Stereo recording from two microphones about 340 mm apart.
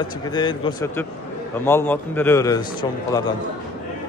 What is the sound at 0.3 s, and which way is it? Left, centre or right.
A man's voice, centre.